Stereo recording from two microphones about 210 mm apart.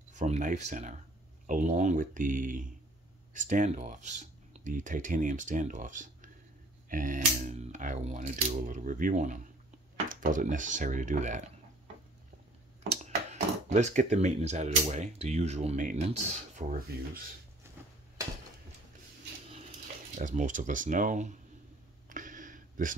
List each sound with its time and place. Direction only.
0.1 s speech: 35° right (ahead or behind)
12.8 s speech: 30° right (ahead or behind)
16.9 s speech: 50° right (ahead or behind)
17.6 s a sound: 10° right (ahead or behind)
20.2 s speech: 35° right (ahead or behind)
22.1 s a sound: 40° right (ahead or behind)